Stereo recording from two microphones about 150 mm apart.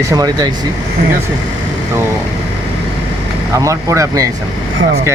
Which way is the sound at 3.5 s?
20° right (ahead or behind).